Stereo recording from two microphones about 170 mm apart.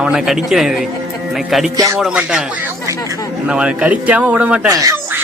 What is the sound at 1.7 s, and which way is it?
Speech, 20° right (ahead or behind).